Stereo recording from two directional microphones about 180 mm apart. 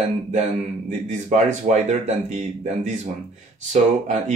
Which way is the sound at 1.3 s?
40° right (ahead or behind).